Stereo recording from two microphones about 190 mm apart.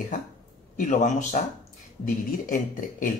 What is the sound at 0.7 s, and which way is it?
Speech, 40° left (ahead or behind).